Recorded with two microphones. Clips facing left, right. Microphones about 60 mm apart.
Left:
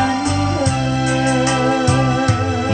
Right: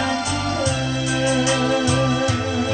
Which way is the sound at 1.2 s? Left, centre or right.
Left.